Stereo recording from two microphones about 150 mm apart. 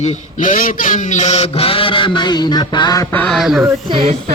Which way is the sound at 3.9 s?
40° right (ahead or behind).